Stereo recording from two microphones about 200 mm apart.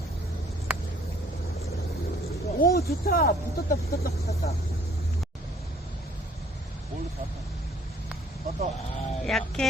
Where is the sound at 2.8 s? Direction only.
50° left (ahead or behind).